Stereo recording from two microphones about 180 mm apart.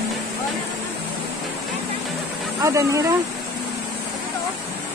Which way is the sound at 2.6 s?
15° right (ahead or behind).